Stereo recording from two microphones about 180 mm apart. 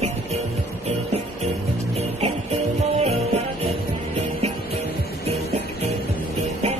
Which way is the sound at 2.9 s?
35° right (ahead or behind).